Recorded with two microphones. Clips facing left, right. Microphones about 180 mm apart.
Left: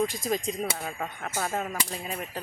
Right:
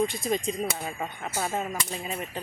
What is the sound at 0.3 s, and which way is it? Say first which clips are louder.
Speech: right 1 dB; centre (ahead or behind).